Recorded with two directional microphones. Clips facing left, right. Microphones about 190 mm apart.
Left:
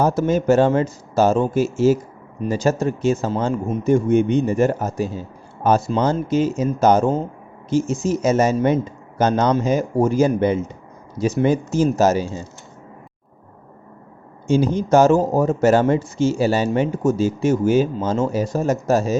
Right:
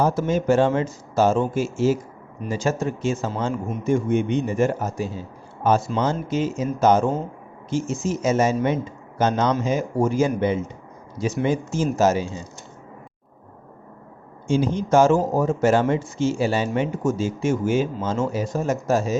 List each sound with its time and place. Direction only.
0.0 s speech: 40° left (ahead or behind)
14.4 s speech: 40° left (ahead or behind)